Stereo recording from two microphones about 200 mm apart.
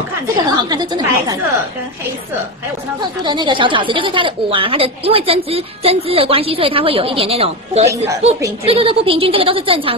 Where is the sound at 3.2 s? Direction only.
20° right (ahead or behind).